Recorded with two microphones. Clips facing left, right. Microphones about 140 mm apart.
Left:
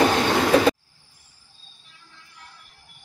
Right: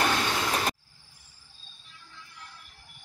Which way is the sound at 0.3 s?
85° left.